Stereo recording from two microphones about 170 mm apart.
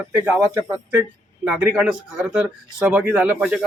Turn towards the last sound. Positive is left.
turn(degrees=-5)  # may be behind; listen again after turning